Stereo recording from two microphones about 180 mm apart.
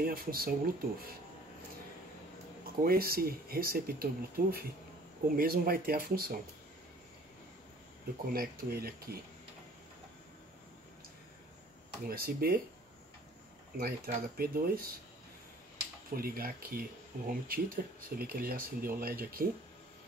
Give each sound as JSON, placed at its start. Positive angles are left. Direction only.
{"t": 0.0, "sound": "speech", "side_deg": -55}
{"t": 2.8, "sound": "speech", "side_deg": -55}
{"t": 8.3, "sound": "speech", "side_deg": -60}
{"t": 12.1, "sound": "speech", "side_deg": -55}
{"t": 13.7, "sound": "speech", "side_deg": -55}
{"t": 16.1, "sound": "speech", "side_deg": -55}